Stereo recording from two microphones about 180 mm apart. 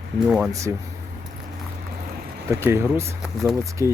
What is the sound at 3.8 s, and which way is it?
Speech, 15° right (ahead or behind).